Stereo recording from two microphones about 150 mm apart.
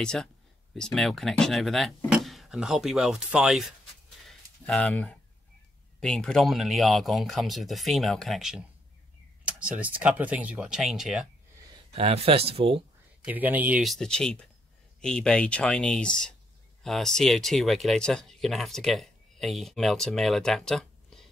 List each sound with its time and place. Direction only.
0.0 s speech: 5° left (ahead or behind)
4.6 s speech: 10° left (ahead or behind)
11.9 s speech: 40° right (ahead or behind)
13.2 s speech: 10° right (ahead or behind)
13.8 s speech: 5° left (ahead or behind)